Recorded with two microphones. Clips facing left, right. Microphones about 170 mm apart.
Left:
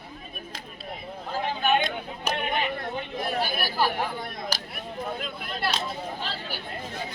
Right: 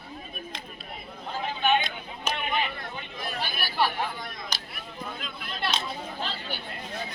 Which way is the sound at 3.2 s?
50° left (ahead or behind).